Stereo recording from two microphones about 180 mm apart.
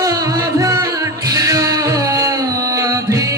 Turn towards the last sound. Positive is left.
turn(degrees=-20)  # may be behind; listen again after turning